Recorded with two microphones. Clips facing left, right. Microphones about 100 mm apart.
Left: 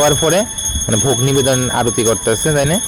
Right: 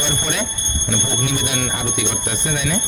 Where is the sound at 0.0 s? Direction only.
55° left (ahead or behind).